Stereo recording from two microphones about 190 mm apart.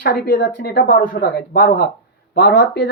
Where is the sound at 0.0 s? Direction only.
65° left (ahead or behind).